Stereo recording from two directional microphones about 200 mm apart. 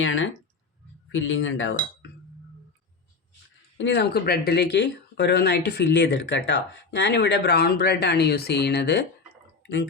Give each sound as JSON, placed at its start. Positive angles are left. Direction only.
{"t": 0.0, "sound": "speech", "side_deg": 75}
{"t": 3.8, "sound": "speech", "side_deg": 60}